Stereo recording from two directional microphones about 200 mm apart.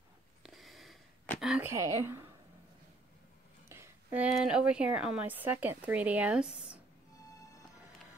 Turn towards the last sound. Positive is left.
turn(degrees=15)  # may be behind; listen again after turning